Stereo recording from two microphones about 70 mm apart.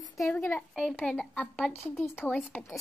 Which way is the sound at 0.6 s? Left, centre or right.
Centre.